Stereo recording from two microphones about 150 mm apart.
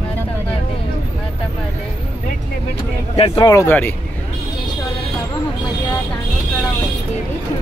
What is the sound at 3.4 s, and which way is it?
Speech, 15° left (ahead or behind).